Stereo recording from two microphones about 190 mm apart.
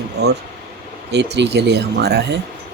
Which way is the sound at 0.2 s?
60° right (ahead or behind).